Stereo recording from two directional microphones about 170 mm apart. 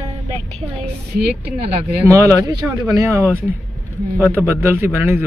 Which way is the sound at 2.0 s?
15° right (ahead or behind).